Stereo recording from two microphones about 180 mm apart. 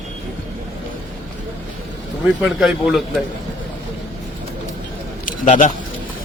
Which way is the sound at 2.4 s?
5° right (ahead or behind).